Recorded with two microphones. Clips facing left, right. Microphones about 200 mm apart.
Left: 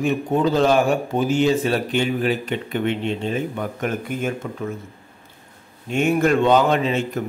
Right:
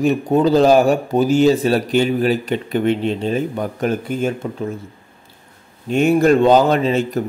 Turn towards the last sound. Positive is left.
turn(degrees=-35)  # may be behind; listen again after turning